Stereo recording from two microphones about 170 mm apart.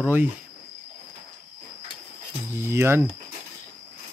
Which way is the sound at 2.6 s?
15° right (ahead or behind).